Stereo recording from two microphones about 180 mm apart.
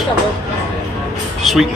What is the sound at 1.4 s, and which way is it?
Speech, centre (ahead or behind).